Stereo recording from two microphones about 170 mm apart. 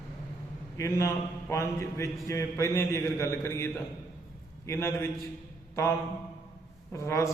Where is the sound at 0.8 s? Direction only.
15° left (ahead or behind).